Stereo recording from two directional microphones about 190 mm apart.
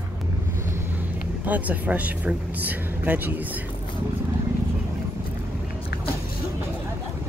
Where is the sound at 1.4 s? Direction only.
10° right (ahead or behind).